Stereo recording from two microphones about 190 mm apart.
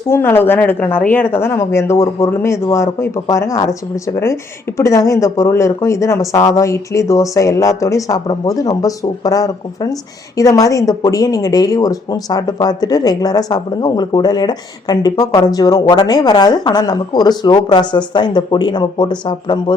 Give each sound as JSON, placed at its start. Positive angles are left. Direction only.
{"t": 0.1, "sound": "speech", "side_deg": 10}